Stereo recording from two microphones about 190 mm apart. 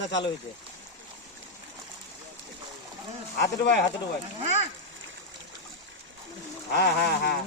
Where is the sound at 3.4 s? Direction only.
60° left (ahead or behind).